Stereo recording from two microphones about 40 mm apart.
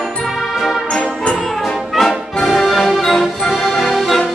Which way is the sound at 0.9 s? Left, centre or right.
Left.